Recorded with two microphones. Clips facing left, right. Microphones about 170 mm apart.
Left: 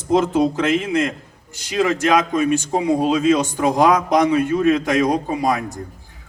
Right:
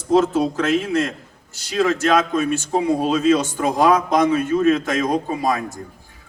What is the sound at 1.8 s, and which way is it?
A man's voice, 15° left (ahead or behind).